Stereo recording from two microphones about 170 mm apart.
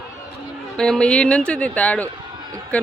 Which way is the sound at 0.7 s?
5° left (ahead or behind).